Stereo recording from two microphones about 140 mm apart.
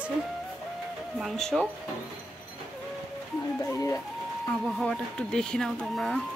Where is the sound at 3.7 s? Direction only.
20° left (ahead or behind).